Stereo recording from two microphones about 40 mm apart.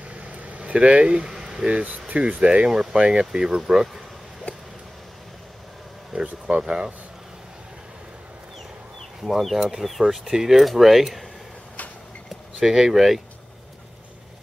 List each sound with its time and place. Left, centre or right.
0.1 s a sound: right; by 1.7 s centre
1.7 s speech: right; by 4.0 s centre
4.5 s a sound: left
6.2 s speech: right
6.6 s speech: centre
9.2 s speech: centre
12.6 s speech: centre